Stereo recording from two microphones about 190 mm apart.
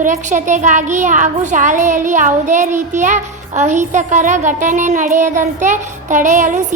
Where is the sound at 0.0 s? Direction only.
40° right (ahead or behind).